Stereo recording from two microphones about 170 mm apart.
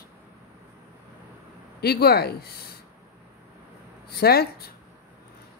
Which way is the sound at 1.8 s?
70° left (ahead or behind).